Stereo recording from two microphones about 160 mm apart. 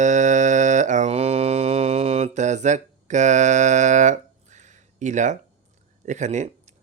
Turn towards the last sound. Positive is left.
turn(degrees=-50)  # may be behind; listen again after turning